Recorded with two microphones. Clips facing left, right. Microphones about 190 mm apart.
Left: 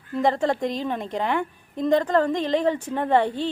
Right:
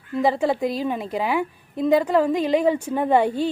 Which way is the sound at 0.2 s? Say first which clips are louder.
Right 1 dB; 5° right (ahead or behind).